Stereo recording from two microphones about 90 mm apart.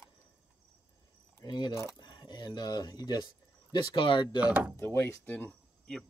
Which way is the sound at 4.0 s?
70° left (ahead or behind).